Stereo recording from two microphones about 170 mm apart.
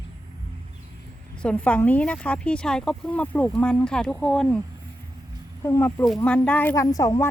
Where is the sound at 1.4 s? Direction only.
5° left (ahead or behind).